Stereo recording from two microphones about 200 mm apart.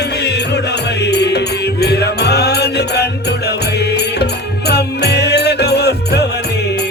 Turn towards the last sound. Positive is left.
turn(degrees=55)  # may be behind; listen again after turning